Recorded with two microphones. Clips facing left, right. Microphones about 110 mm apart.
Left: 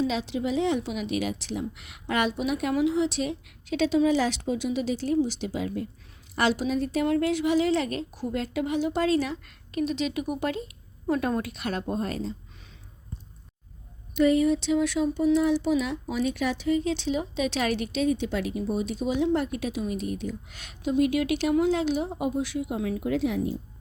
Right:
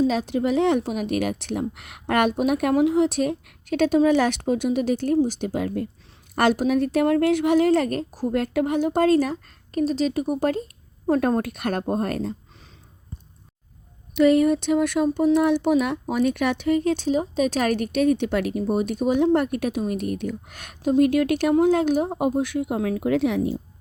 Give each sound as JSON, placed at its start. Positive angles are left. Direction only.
{"t": 0.0, "sound": "a woman's voice", "side_deg": -45}
{"t": 8.3, "sound": "a woman's voice", "side_deg": -55}
{"t": 14.2, "sound": "a woman's voice", "side_deg": -65}